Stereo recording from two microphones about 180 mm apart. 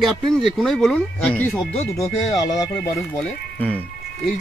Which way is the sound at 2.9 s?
5° left (ahead or behind).